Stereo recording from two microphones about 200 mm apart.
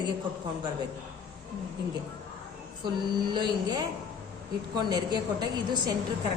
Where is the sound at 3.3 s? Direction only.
20° right (ahead or behind).